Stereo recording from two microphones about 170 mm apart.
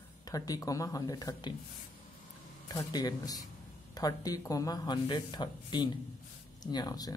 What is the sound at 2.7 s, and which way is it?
Speech, 20° left (ahead or behind).